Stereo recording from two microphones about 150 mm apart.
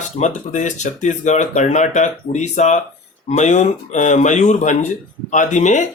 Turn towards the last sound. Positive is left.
turn(degrees=55)  # may be behind; listen again after turning